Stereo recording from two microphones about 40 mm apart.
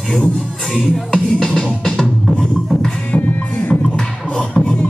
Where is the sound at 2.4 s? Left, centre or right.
Centre.